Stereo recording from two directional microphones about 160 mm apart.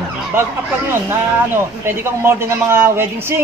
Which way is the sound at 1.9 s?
15° right (ahead or behind).